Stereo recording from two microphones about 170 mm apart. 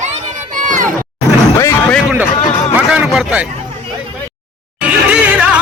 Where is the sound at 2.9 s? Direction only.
5° right (ahead or behind).